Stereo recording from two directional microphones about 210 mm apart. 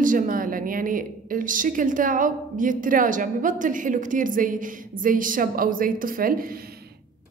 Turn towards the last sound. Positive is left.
turn(degrees=-45)  # may be behind; listen again after turning